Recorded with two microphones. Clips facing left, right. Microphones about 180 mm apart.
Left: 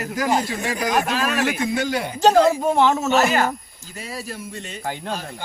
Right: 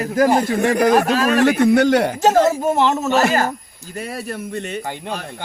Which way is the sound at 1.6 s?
65° right (ahead or behind).